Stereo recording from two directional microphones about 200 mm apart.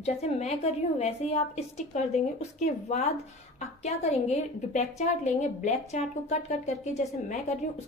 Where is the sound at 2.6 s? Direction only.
35° left (ahead or behind).